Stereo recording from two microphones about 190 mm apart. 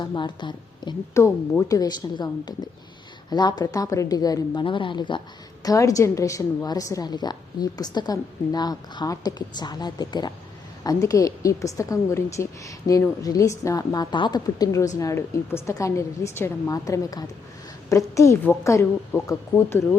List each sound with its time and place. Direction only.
0.0 s a woman's voice: 25° left (ahead or behind)